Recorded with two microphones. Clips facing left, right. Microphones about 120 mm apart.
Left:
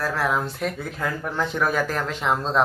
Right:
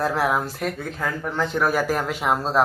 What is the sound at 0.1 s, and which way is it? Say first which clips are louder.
Speech: right 2 dB; 10° right (ahead or behind).